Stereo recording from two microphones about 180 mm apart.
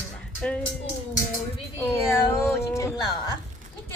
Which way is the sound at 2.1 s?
15° left (ahead or behind).